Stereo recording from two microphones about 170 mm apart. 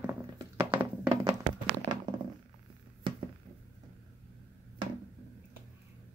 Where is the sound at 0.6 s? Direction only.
30° right (ahead or behind).